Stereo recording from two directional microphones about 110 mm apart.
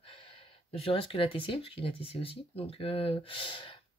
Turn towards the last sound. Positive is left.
turn(degrees=50)  # may be behind; listen again after turning